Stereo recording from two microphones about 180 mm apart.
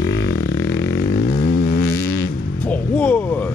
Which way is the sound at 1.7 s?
60° left (ahead or behind).